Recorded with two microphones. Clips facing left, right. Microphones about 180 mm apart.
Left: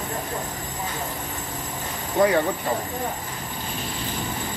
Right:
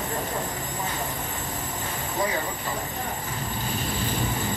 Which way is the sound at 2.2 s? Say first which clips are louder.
Left 9 dB; 65° left (ahead or behind).